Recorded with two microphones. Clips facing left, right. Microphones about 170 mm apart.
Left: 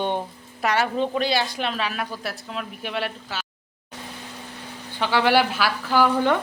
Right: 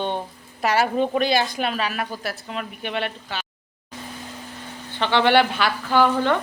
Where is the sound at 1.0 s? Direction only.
50° right (ahead or behind).